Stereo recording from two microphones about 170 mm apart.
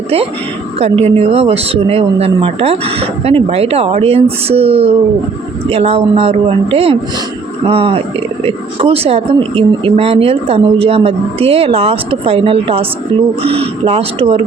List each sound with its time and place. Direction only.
0.8 s speech: 40° right (ahead or behind)